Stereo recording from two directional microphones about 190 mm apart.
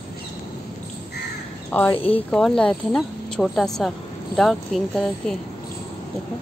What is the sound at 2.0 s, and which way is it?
Speech, 30° left (ahead or behind).